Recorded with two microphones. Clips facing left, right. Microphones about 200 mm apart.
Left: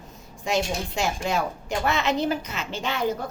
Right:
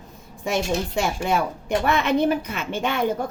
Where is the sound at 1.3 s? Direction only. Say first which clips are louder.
Right 4 dB; 55° right (ahead or behind).